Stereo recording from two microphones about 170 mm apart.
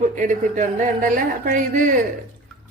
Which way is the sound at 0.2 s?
50° right (ahead or behind).